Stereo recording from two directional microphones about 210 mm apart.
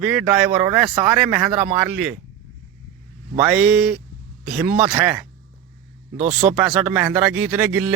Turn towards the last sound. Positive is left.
turn(degrees=-5)  # may be behind; listen again after turning